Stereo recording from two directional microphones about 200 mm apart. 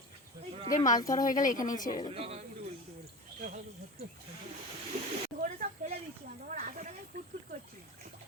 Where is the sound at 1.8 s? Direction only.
20° left (ahead or behind).